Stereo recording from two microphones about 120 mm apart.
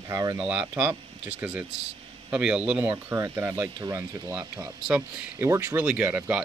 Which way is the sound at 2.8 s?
20° right (ahead or behind).